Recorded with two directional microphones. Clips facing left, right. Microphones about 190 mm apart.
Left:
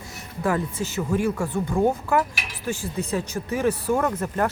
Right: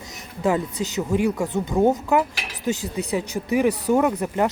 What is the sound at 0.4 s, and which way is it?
Speech, 20° right (ahead or behind).